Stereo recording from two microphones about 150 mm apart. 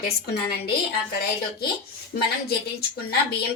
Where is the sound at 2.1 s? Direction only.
90° left.